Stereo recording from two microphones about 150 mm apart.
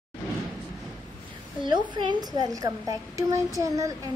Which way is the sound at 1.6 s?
30° right (ahead or behind).